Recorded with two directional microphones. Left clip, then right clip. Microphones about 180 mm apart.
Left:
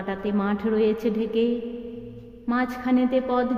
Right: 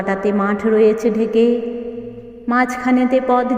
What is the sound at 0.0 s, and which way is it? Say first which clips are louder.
A woman's voice: right 10 dB; 25° right (ahead or behind).